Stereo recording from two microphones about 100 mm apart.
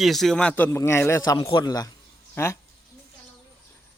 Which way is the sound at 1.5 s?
40° left (ahead or behind).